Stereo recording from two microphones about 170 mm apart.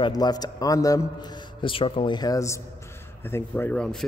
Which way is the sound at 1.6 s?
30° left (ahead or behind).